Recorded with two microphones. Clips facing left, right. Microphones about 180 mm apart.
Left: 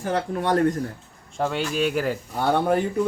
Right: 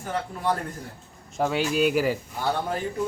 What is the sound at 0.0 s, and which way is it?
Speech, 85° left.